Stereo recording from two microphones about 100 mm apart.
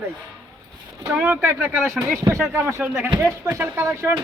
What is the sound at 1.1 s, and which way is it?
Speech, 10° right (ahead or behind).